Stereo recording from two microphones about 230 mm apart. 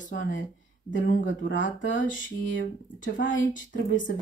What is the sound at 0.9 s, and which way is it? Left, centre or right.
Speech, left.